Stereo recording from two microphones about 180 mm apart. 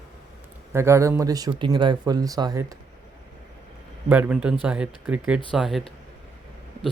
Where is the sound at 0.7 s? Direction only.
15° right (ahead or behind).